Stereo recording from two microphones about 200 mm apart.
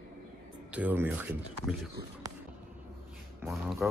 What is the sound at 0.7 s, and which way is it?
Speech, 10° right (ahead or behind).